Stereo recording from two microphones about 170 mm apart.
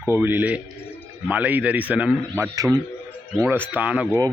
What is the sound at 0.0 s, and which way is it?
A man's voice, 15° right (ahead or behind).